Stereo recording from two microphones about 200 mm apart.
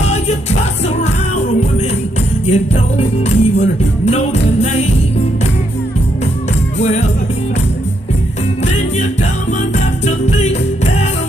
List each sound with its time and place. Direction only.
0.0 s music: 35° left (ahead or behind)
2.4 s music: 30° left (ahead or behind)
10.0 s music: 35° left (ahead or behind)